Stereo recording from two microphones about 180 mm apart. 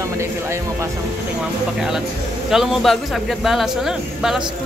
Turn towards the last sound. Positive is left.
turn(degrees=0)  # may be behind; listen again after turning